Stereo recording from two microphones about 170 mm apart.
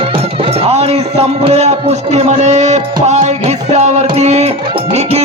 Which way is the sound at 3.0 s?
45° right (ahead or behind).